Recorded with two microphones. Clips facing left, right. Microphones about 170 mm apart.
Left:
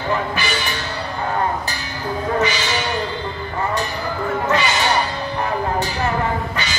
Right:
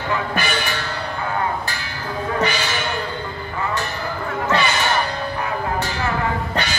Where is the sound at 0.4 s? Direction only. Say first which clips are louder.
Right 1 dB; 55° right (ahead or behind).